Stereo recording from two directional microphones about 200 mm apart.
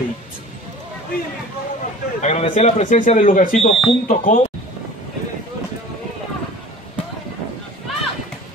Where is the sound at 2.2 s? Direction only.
35° left (ahead or behind).